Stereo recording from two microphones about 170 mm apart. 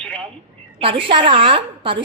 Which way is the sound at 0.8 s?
30° right (ahead or behind).